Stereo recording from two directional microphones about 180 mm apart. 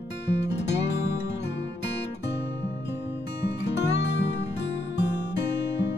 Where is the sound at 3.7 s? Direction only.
75° left (ahead or behind).